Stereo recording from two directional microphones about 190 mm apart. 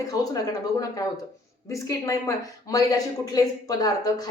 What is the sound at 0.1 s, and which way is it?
Speech, 20° left (ahead or behind).